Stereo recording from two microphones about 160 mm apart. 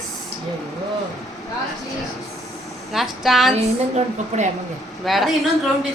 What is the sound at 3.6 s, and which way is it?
Speech, 45° right (ahead or behind).